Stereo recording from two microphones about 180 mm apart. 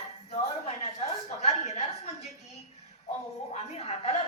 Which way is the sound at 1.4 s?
35° left (ahead or behind).